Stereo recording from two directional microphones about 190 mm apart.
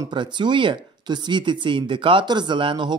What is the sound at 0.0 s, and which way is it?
Speech, 25° right (ahead or behind).